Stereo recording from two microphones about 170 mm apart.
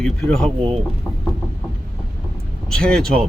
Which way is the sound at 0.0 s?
5° left (ahead or behind).